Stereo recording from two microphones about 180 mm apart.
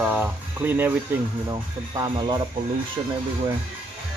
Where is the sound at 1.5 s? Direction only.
20° right (ahead or behind).